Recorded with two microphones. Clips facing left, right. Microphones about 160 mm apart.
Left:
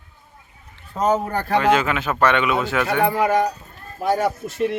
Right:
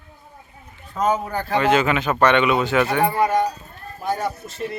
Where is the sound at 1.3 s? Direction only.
50° left (ahead or behind).